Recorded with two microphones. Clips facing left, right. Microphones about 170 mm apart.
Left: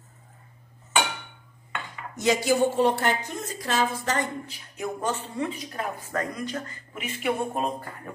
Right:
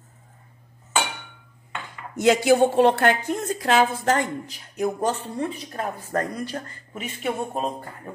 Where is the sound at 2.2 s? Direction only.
65° right (ahead or behind).